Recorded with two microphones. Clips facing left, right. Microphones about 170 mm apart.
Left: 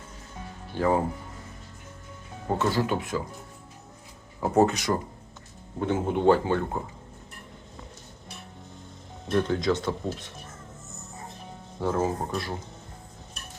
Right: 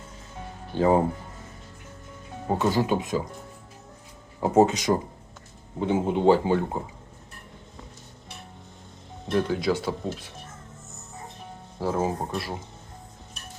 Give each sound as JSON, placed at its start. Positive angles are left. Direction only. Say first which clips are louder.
{"t": 0.8, "sound": "speech", "louder": "right 4 dB", "side_deg": -20}
{"t": 2.5, "sound": "speech", "louder": "right 2 dB", "side_deg": -15}
{"t": 4.4, "sound": "speech", "louder": "right 2 dB", "side_deg": -15}
{"t": 9.3, "sound": "speech", "louder": "even", "side_deg": -5}
{"t": 11.8, "sound": "speech", "louder": "even", "side_deg": -5}